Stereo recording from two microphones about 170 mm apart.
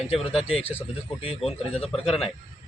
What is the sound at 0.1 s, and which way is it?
Speech, 35° left (ahead or behind).